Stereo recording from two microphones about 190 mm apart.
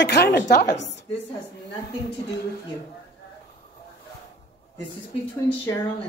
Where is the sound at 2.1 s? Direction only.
60° left (ahead or behind).